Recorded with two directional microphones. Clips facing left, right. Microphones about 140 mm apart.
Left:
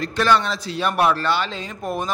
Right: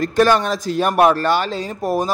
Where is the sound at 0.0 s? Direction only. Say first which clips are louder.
Right 4 dB; 45° right (ahead or behind).